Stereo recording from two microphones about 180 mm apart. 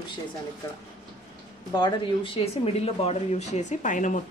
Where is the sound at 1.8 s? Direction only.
25° left (ahead or behind).